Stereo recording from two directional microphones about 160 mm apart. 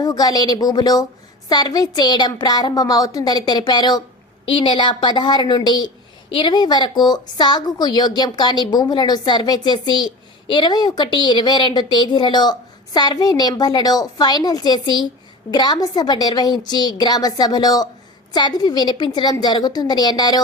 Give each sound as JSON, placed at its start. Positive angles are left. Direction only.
{"t": 0.0, "sound": "a woman's voice", "side_deg": 25}